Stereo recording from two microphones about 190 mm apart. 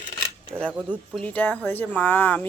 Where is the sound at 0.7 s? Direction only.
5° right (ahead or behind).